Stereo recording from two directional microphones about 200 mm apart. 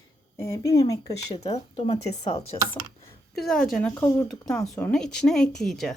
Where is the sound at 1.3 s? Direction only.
30° left (ahead or behind).